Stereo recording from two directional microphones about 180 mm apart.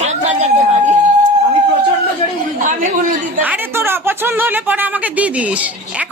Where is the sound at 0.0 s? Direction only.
40° right (ahead or behind).